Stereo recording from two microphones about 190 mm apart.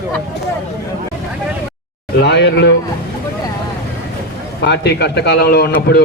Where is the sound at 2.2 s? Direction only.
60° left (ahead or behind).